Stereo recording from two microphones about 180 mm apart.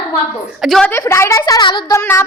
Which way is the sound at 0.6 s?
Centre (ahead or behind).